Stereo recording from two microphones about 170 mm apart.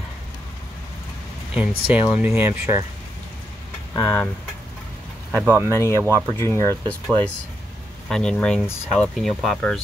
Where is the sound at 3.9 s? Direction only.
20° left (ahead or behind).